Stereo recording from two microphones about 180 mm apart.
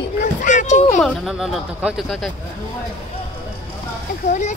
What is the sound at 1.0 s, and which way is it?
Speech, centre (ahead or behind).